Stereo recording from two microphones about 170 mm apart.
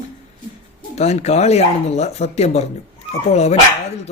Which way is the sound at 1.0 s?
40° left (ahead or behind).